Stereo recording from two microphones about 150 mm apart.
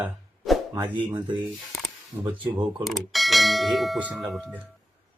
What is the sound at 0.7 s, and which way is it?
Speech, 30° right (ahead or behind).